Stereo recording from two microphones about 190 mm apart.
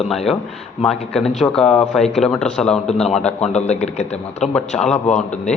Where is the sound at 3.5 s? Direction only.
35° left (ahead or behind).